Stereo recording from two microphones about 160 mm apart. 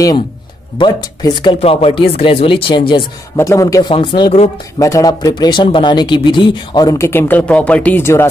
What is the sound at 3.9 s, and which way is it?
Speech, 35° left (ahead or behind).